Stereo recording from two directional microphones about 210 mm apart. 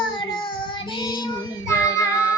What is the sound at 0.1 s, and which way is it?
Child singing, 20° left (ahead or behind).